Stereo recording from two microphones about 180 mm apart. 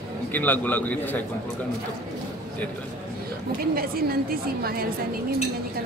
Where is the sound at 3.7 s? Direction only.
55° right (ahead or behind).